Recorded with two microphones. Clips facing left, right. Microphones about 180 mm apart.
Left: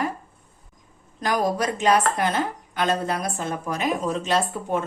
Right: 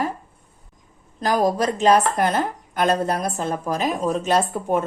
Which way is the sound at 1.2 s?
35° right (ahead or behind).